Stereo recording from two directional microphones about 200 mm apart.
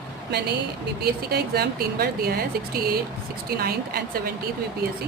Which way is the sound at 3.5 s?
50° right (ahead or behind).